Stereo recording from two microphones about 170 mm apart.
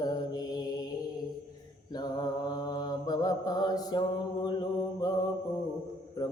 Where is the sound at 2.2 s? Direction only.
25° left (ahead or behind).